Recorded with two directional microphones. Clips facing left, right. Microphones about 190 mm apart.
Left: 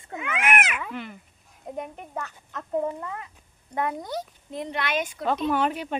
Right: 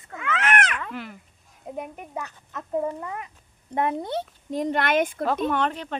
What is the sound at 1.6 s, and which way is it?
Speech, 5° right (ahead or behind).